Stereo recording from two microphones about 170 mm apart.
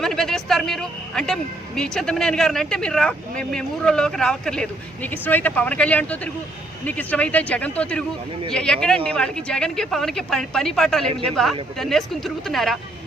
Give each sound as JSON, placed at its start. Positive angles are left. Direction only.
{"t": 0.0, "sound": "a woman's voice", "side_deg": 0}